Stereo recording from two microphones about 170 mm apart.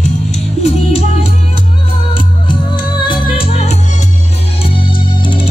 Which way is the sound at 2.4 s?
25° left (ahead or behind).